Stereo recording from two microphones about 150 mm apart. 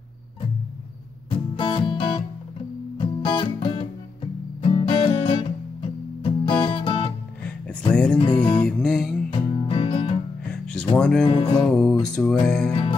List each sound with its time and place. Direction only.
1.3 s music: 35° left (ahead or behind)
7.9 s music: 5° left (ahead or behind)
8.2 s music: 30° left (ahead or behind)
8.6 s music: 5° left (ahead or behind)
9.3 s music: 35° left (ahead or behind)
10.5 s music: 5° left (ahead or behind)
11.2 s music: 30° left (ahead or behind)
11.6 s music: 5° left (ahead or behind)